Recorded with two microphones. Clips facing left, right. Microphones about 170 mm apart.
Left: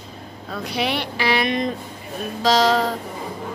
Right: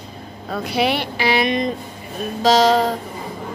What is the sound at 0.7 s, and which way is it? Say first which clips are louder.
Speech: right 4 dB; 5° right (ahead or behind).